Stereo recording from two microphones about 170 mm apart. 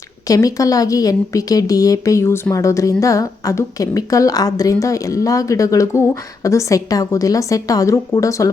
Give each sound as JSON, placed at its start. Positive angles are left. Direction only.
{"t": 0.3, "sound": "a woman's voice", "side_deg": 20}